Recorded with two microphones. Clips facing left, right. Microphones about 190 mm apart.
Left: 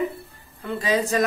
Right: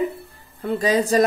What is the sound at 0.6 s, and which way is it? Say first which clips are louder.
Speech: right 4 dB; 40° right (ahead or behind).